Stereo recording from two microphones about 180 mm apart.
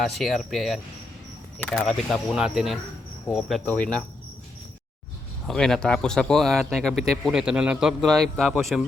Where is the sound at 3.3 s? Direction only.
Centre (ahead or behind).